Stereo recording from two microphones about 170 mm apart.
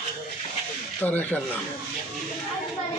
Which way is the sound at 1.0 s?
10° left (ahead or behind).